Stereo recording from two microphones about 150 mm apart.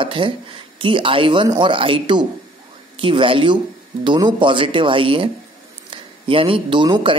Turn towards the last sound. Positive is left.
turn(degrees=-35)  # may be behind; listen again after turning